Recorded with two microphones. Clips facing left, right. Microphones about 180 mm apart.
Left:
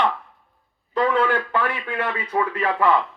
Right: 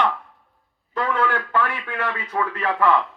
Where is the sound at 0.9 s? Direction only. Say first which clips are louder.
Left 3 dB; 25° left (ahead or behind).